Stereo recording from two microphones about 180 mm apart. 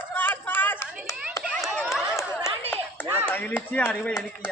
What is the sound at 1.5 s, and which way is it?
Run, 5° left (ahead or behind).